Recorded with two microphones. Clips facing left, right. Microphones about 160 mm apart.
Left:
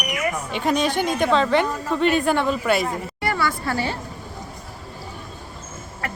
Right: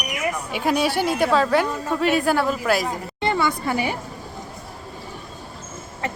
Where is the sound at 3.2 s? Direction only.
20° right (ahead or behind).